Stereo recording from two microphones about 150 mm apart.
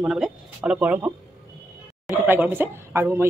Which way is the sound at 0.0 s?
Centre (ahead or behind).